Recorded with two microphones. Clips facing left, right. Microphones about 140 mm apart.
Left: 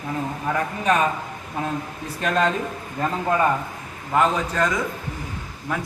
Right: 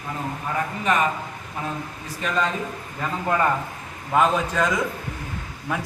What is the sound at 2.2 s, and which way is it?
Speech, 65° left (ahead or behind).